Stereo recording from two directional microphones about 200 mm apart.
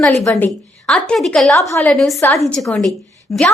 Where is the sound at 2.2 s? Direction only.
15° left (ahead or behind).